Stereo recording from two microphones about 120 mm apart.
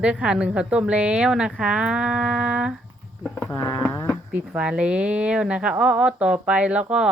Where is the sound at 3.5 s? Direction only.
30° left (ahead or behind).